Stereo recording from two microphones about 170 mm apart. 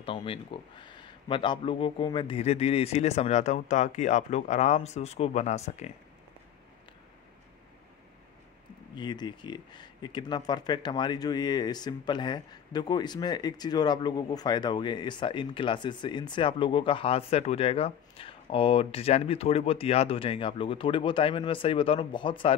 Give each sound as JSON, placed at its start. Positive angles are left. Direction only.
{"t": 0.0, "sound": "speech", "side_deg": 30}
{"t": 8.9, "sound": "speech", "side_deg": 25}